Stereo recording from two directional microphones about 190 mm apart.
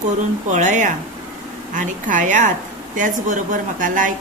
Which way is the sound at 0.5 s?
40° right (ahead or behind).